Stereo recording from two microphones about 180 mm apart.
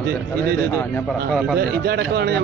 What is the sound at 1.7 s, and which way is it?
Speech, 65° right (ahead or behind).